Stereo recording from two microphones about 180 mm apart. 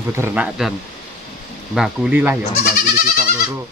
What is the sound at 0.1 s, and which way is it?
Speech, 10° right (ahead or behind).